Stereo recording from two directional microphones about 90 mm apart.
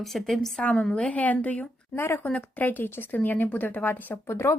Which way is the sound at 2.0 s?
25° left (ahead or behind).